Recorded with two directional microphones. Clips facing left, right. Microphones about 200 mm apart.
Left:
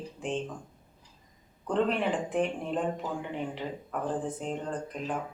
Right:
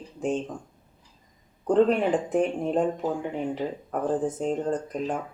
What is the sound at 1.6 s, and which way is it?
Speech, 45° right (ahead or behind).